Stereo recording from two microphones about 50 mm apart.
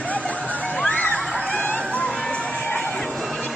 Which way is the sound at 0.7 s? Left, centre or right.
Left.